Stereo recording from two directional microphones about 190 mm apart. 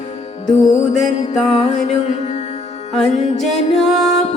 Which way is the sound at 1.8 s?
35° left (ahead or behind).